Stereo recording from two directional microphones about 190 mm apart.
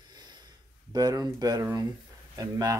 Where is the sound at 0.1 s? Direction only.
20° right (ahead or behind).